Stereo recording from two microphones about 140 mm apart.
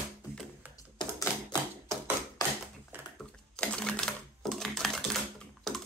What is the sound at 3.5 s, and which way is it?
Typing, 5° left (ahead or behind).